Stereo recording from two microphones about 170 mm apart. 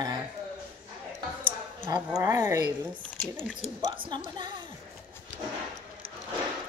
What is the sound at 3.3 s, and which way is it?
Speech, 5° right (ahead or behind).